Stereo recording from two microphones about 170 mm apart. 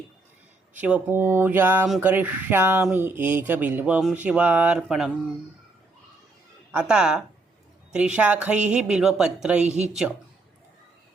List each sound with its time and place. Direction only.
0.7 s speech: 10° right (ahead or behind)
6.7 s a woman's voice: 5° right (ahead or behind)
9.6 s speech: 40° right (ahead or behind)